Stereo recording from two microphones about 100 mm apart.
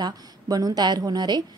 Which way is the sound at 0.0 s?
40° right (ahead or behind).